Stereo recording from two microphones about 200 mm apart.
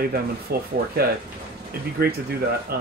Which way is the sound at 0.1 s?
50° right (ahead or behind).